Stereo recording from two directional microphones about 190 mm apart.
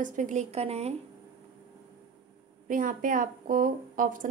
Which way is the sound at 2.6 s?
45° right (ahead or behind).